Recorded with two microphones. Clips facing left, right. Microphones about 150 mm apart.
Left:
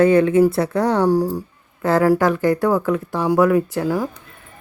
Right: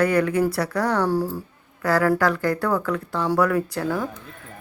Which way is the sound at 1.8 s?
25° left (ahead or behind).